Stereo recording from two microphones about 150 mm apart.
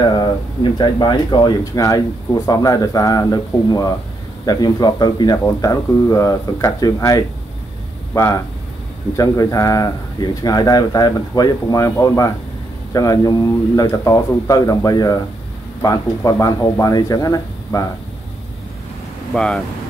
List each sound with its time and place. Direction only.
0.0 s a sound: 30° left (ahead or behind)
0.7 s speech: 30° left (ahead or behind)
19.3 s speech: 5° left (ahead or behind)